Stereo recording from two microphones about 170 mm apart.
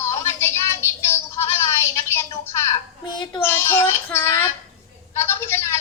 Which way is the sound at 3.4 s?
15° left (ahead or behind).